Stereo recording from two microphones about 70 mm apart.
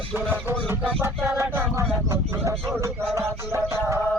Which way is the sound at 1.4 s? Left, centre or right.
Right.